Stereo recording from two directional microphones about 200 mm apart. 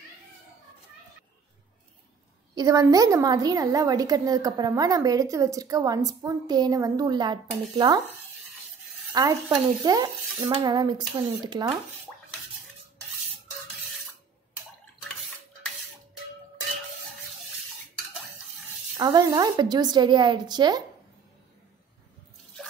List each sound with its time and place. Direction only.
2.5 s a woman's voice: 20° right (ahead or behind)
9.1 s speech: 20° right (ahead or behind)
18.9 s speech: 20° right (ahead or behind)